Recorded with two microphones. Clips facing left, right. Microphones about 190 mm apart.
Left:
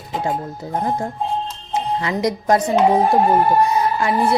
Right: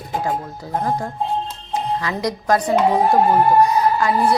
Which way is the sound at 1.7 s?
25° left (ahead or behind).